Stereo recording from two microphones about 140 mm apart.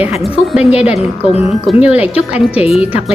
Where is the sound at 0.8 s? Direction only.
50° left (ahead or behind).